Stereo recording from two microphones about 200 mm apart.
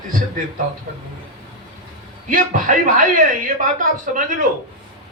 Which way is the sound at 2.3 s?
40° right (ahead or behind).